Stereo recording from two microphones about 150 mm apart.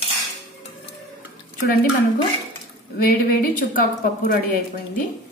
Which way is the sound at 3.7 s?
80° left.